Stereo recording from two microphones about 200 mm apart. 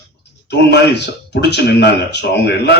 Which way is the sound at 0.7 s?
60° left (ahead or behind).